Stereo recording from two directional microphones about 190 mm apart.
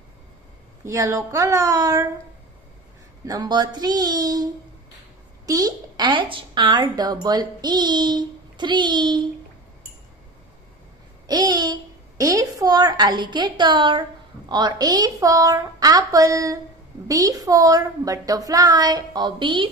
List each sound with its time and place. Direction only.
0.8 s speech: 15° right (ahead or behind)
3.3 s a woman's voice: 20° right (ahead or behind)
5.5 s a woman's voice: 20° right (ahead or behind)
11.2 s a woman's voice: 20° right (ahead or behind)